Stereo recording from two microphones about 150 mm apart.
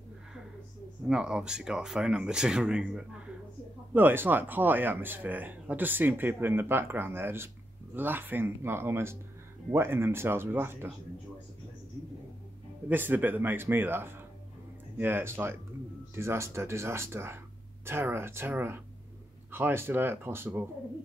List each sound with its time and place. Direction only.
1.0 s speech: 5° right (ahead or behind)
12.8 s speech: 10° right (ahead or behind)